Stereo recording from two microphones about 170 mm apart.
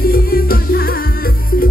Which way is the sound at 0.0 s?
60° left (ahead or behind).